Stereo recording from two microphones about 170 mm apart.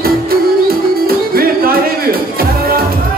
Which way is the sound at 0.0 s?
60° right (ahead or behind).